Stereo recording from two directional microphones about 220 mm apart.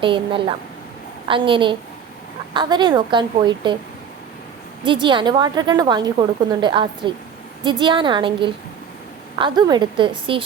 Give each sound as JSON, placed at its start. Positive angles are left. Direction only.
{"t": 0.0, "sound": "a woman's voice", "side_deg": -25}
{"t": 4.8, "sound": "a woman's voice", "side_deg": -20}